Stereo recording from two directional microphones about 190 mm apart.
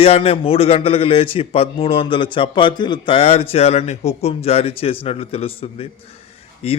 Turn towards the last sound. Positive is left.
turn(degrees=30)  # may be behind; listen again after turning